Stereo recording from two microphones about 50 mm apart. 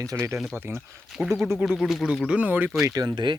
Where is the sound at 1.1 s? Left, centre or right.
Centre.